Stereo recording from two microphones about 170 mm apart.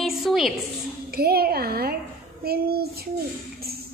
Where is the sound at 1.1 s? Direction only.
65° right (ahead or behind).